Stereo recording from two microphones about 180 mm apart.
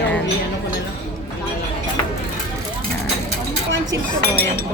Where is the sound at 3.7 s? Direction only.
90° right.